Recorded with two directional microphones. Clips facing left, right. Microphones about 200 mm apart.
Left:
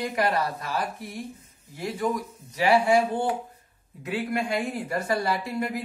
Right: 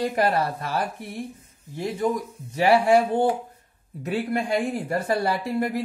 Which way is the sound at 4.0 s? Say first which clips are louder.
Right 2 dB; 30° right (ahead or behind).